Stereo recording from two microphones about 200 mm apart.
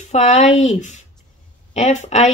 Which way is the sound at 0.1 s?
35° left (ahead or behind).